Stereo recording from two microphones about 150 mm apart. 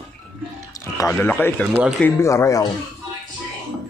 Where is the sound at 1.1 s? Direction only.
10° left (ahead or behind).